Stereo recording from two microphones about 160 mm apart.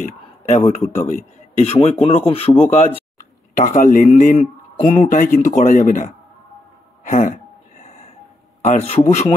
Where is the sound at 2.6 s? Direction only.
50° left (ahead or behind).